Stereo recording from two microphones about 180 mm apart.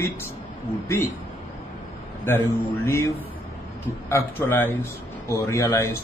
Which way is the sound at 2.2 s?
10° left (ahead or behind).